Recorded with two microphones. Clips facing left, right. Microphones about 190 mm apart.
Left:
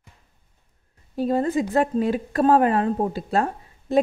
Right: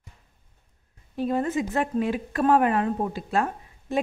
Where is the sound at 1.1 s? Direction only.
35° left (ahead or behind).